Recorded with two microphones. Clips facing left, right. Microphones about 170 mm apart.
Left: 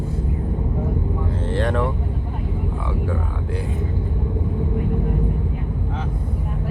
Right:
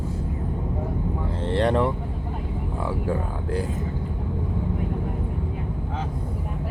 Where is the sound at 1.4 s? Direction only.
30° right (ahead or behind).